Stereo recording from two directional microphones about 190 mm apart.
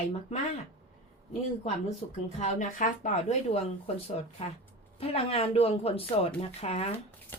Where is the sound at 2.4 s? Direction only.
40° left (ahead or behind).